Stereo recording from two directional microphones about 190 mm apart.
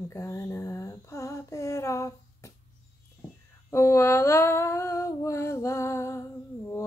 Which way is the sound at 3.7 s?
15° left (ahead or behind).